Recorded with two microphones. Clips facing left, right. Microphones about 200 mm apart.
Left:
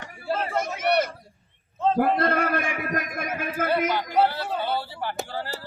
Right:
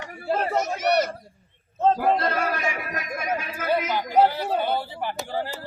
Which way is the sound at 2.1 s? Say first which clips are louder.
Left 2 dB; 55° left (ahead or behind).